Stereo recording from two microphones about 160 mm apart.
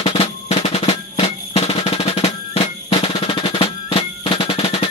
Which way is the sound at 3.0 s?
35° left (ahead or behind).